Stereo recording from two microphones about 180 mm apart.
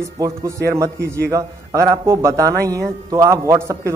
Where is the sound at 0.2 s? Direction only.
20° right (ahead or behind).